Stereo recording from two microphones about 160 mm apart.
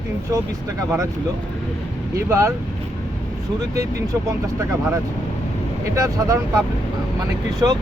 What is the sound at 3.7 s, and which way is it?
Speech, 20° right (ahead or behind).